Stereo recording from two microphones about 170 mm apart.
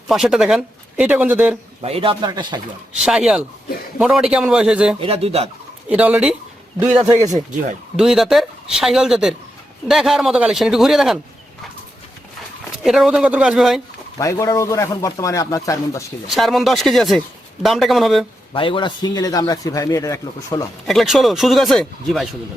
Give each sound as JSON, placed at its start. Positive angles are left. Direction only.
{"t": 0.1, "sound": "speech", "side_deg": -5}
{"t": 1.8, "sound": "speech", "side_deg": -35}
{"t": 2.9, "sound": "speech", "side_deg": -5}
{"t": 4.9, "sound": "speech", "side_deg": -35}
{"t": 5.9, "sound": "speech", "side_deg": -5}
{"t": 7.9, "sound": "speech", "side_deg": 0}
{"t": 12.8, "sound": "speech", "side_deg": -5}
{"t": 14.2, "sound": "a man's voice", "side_deg": 20}
{"t": 16.2, "sound": "speech", "side_deg": 0}
{"t": 18.5, "sound": "a man's voice", "side_deg": 30}
{"t": 20.8, "sound": "speech", "side_deg": 0}